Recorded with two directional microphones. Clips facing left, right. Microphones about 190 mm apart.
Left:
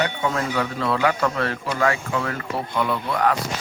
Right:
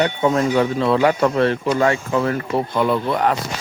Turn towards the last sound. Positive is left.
turn(degrees=-25)  # may be behind; listen again after turning